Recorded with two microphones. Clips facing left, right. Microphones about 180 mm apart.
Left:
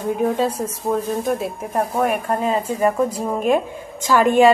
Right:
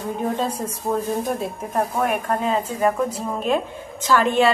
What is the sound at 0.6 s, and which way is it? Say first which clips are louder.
A woman's voice: left 2 dB; centre (ahead or behind).